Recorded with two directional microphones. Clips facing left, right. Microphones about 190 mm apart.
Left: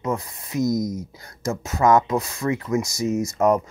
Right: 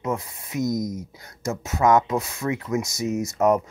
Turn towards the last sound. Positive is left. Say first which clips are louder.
# left 1 dB
turn(degrees=-5)  # may be behind; listen again after turning